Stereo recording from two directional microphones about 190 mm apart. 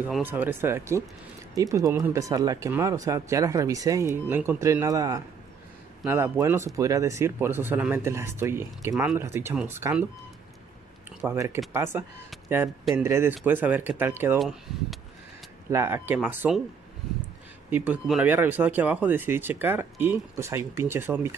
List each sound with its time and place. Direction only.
0.0 s speech: 10° right (ahead or behind)
11.2 s speech: 15° right (ahead or behind)
14.4 s speech: centre (ahead or behind)
15.7 s speech: 10° right (ahead or behind)
17.6 s speech: 10° right (ahead or behind)